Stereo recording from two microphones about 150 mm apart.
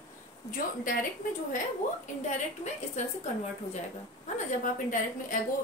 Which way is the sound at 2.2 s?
50° left (ahead or behind).